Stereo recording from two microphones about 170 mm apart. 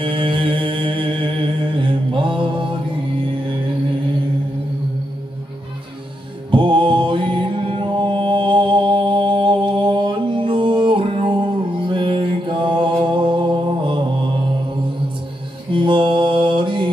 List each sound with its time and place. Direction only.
0.0 s music: 30° right (ahead or behind)
6.5 s mantra: 30° right (ahead or behind)
15.7 s mantra: 30° right (ahead or behind)